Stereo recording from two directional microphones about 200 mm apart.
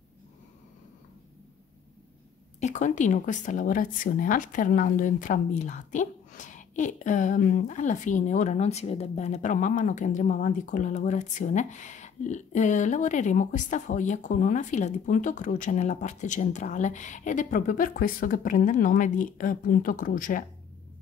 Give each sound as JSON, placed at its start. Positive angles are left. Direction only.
{"t": 2.6, "sound": "speech", "side_deg": 40}